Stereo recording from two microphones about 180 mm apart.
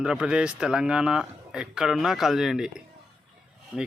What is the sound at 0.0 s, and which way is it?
Speech, 5° right (ahead or behind).